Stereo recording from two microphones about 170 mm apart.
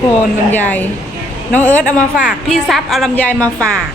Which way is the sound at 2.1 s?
Centre (ahead or behind).